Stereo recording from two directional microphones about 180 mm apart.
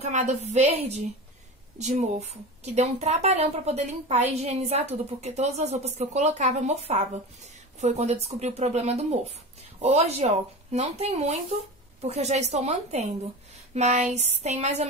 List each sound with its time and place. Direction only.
0.0 s a woman's voice: 40° right (ahead or behind)